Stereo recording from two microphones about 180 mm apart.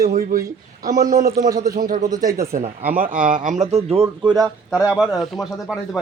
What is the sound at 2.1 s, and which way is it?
Speech, 20° right (ahead or behind).